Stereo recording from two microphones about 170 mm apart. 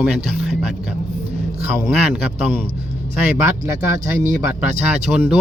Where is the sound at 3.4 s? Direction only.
15° right (ahead or behind).